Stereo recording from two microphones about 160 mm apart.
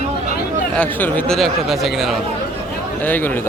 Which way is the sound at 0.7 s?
10° left (ahead or behind).